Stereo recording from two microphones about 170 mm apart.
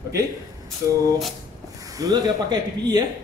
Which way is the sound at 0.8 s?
15° right (ahead or behind).